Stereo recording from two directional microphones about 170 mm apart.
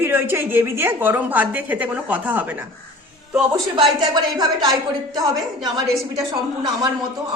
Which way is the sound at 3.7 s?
25° right (ahead or behind).